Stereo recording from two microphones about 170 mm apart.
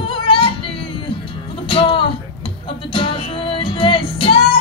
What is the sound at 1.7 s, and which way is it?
Music, 30° left (ahead or behind).